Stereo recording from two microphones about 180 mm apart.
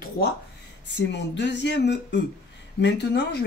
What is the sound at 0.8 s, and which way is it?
Speech, 75° left (ahead or behind).